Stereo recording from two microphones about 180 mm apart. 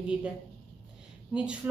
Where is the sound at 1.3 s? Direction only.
5° right (ahead or behind).